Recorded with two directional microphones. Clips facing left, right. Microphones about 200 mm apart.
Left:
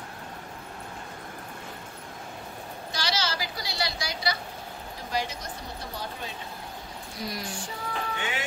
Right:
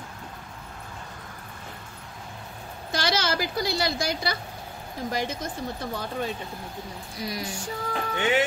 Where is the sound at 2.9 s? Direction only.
55° right (ahead or behind).